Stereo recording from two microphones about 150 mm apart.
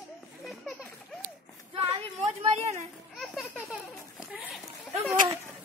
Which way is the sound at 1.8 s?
45° right (ahead or behind).